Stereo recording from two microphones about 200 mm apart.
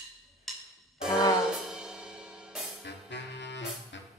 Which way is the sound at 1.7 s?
5° right (ahead or behind).